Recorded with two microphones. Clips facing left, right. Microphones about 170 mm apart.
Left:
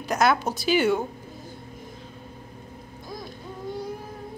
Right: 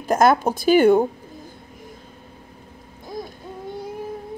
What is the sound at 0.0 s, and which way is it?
A woman's voice, 50° right (ahead or behind).